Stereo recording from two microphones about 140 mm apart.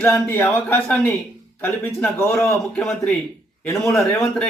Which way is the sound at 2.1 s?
20° left (ahead or behind).